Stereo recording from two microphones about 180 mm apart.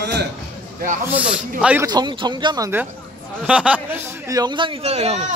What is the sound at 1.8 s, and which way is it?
Speech, 25° right (ahead or behind).